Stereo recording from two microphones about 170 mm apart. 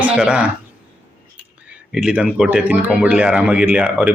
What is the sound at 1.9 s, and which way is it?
Speech, 5° right (ahead or behind).